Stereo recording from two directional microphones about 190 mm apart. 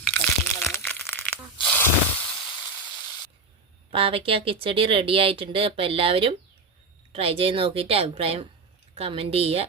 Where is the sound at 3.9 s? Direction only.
30° right (ahead or behind).